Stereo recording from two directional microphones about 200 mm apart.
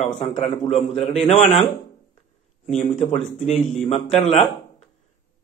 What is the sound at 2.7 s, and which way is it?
Speech, 35° left (ahead or behind).